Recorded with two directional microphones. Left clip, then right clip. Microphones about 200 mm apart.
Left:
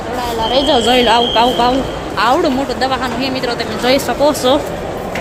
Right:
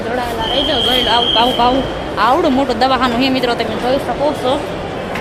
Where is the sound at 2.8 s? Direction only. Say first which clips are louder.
Right 3 dB; 25° right (ahead or behind).